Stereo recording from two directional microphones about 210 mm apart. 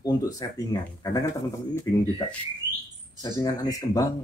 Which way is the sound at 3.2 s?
15° left (ahead or behind).